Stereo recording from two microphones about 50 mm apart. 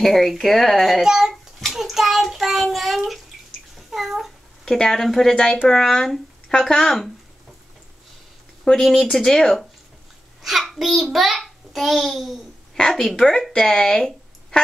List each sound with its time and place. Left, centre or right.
0.0 s speech: centre
1.0 s a child's voice: centre
1.3 s child singing: centre
3.7 s cat: centre
4.7 s speech: centre
8.6 s speech: centre
10.4 s a child's voice: centre
12.7 s a woman's voice: centre